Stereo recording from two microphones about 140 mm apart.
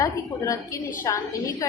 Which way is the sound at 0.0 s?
25° left (ahead or behind).